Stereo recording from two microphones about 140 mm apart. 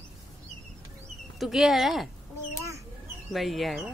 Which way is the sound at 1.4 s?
Centre (ahead or behind).